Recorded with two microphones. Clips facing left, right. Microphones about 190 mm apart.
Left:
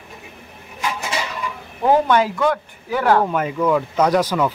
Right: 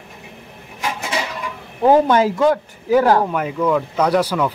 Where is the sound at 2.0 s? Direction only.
40° right (ahead or behind).